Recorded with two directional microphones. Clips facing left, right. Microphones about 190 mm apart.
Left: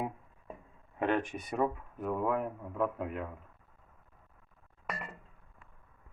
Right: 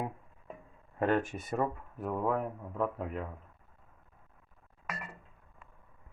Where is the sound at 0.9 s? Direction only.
5° right (ahead or behind).